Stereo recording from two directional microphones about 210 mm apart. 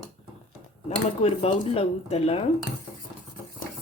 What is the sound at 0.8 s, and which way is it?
Speech, 30° left (ahead or behind).